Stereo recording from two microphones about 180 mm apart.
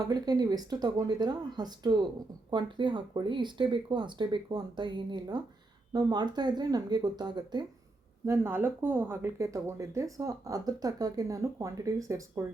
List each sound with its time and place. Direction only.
0.0 s speech: 20° right (ahead or behind)
8.3 s speech: 10° right (ahead or behind)